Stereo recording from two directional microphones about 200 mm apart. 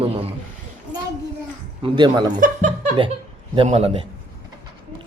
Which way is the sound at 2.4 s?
40° right (ahead or behind).